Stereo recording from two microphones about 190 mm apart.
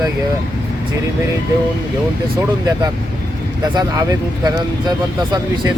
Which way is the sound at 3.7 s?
20° right (ahead or behind).